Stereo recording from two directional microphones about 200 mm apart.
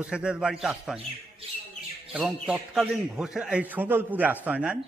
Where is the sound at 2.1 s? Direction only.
5° right (ahead or behind).